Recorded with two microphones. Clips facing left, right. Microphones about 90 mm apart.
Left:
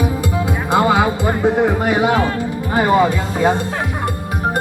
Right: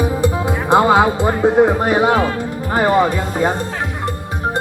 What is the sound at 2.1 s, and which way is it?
Speech, centre (ahead or behind).